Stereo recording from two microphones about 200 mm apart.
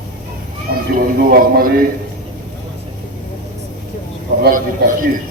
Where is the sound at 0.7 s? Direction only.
50° right (ahead or behind).